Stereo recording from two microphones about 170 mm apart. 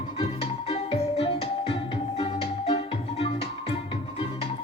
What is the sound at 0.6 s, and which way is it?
Music, 35° left (ahead or behind).